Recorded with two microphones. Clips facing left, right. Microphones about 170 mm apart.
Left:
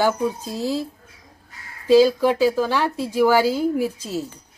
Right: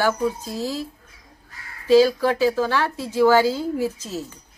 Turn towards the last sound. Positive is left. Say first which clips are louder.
# left 2 dB
turn(degrees=15)  # may be behind; listen again after turning